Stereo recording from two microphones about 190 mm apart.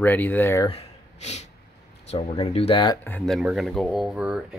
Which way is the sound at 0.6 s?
30° left (ahead or behind).